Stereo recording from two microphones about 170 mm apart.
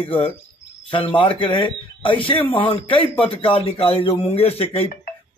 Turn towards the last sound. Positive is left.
turn(degrees=35)  # may be behind; listen again after turning